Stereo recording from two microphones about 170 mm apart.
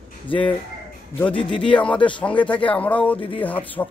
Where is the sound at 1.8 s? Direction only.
5° left (ahead or behind).